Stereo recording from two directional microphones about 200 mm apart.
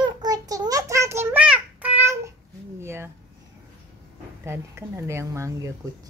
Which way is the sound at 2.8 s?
10° right (ahead or behind).